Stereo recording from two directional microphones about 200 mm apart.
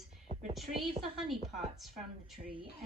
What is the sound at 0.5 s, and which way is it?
Speech, centre (ahead or behind).